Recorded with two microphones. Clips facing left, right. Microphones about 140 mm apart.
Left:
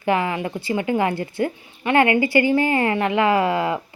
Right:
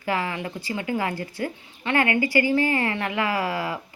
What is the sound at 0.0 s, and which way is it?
Speech, 20° left (ahead or behind).